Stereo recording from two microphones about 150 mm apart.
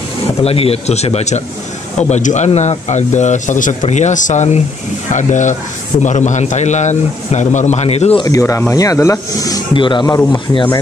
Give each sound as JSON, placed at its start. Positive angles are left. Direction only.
{"t": 0.4, "sound": "a man's voice", "side_deg": 40}
{"t": 8.2, "sound": "speech", "side_deg": 20}